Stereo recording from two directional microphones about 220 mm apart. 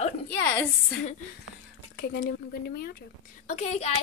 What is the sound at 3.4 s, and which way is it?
Speech, 30° left (ahead or behind).